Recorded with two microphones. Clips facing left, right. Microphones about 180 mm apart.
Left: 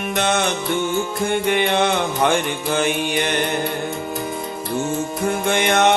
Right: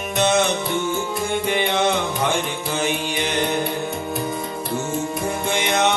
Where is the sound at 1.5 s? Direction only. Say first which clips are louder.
Left 1 dB; 60° left (ahead or behind).